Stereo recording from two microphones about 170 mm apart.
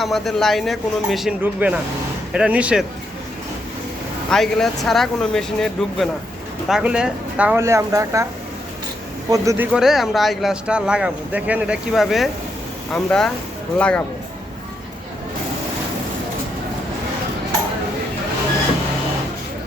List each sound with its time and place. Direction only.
0.0 s speech: centre (ahead or behind)
4.3 s speech: 5° left (ahead or behind); by 8.3 s 15° right (ahead or behind)
9.3 s speech: 20° right (ahead or behind)
9.7 s speech: centre (ahead or behind)